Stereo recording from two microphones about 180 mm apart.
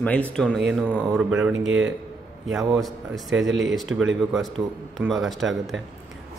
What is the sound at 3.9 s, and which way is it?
Speech, 90° right.